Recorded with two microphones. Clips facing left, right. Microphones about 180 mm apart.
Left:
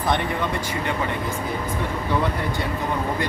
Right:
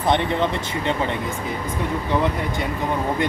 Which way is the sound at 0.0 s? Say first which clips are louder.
Right 3 dB; 25° right (ahead or behind).